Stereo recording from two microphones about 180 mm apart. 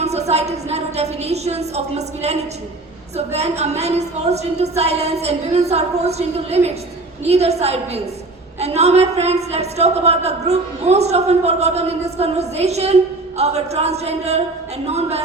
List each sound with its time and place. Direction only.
0.0 s a woman's voice: 35° right (ahead or behind)